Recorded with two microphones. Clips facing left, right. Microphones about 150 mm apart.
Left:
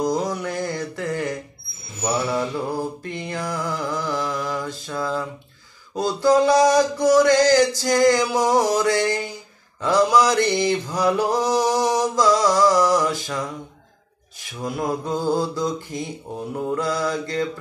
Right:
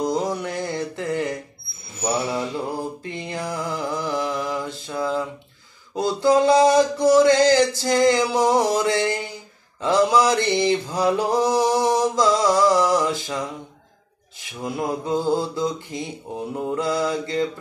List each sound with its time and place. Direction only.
0.0 s mantra: 25° right (ahead or behind)
3.0 s mantra: 20° right (ahead or behind)
14.6 s mantra: 20° right (ahead or behind)